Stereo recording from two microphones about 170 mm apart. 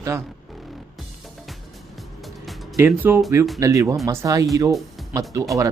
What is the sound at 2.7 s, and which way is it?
Speech, 15° right (ahead or behind).